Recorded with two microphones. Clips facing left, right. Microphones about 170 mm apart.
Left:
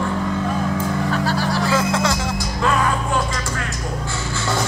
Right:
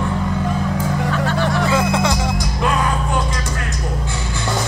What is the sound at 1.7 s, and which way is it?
Music, 15° right (ahead or behind).